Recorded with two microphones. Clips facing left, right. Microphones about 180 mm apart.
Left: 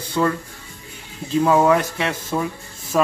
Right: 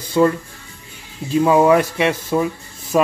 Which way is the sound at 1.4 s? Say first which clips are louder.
Right 3 dB; 10° right (ahead or behind).